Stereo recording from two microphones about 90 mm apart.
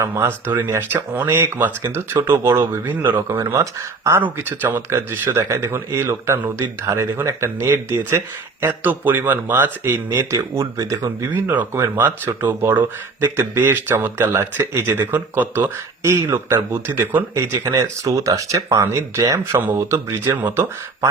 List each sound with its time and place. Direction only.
0.0 s speech: 30° right (ahead or behind)
4.2 s speech: 20° right (ahead or behind)